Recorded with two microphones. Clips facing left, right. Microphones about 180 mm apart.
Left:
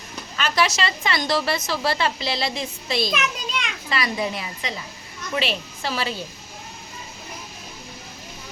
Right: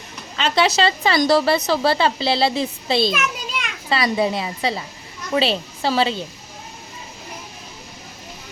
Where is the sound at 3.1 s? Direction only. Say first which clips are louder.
Right 2 dB; 5° right (ahead or behind).